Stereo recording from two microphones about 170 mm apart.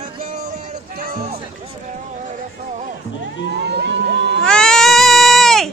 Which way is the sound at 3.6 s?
85° right.